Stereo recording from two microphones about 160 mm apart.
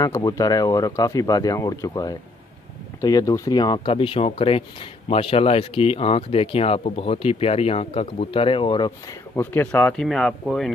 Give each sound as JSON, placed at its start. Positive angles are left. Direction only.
{"t": 0.0, "sound": "speech", "side_deg": 20}
{"t": 9.3, "sound": "speech", "side_deg": 15}